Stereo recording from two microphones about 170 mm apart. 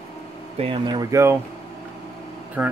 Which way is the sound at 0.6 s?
30° right (ahead or behind).